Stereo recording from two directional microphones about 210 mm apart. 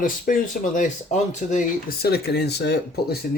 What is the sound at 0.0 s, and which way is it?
Speech, 40° left (ahead or behind).